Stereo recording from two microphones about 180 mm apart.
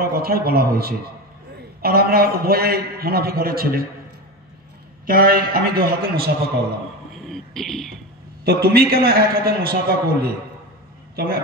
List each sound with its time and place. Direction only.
0.2 s a man's voice: 60° right (ahead or behind)
5.0 s a man's voice: 55° right (ahead or behind)
7.2 s a sound: centre (ahead or behind)
8.5 s a man's voice: 60° right (ahead or behind)